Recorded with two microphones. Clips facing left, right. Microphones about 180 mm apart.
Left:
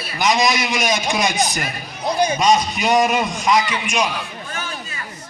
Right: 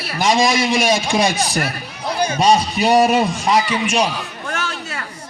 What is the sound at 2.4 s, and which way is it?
A man's voice, 30° right (ahead or behind).